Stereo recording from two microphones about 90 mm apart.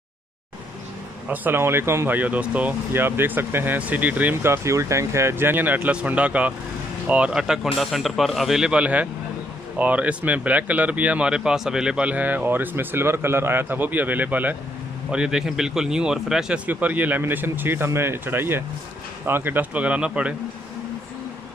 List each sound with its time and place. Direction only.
1.3 s speech: 20° right (ahead or behind)